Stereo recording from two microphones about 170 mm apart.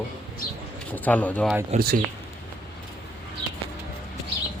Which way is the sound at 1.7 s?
40° right (ahead or behind).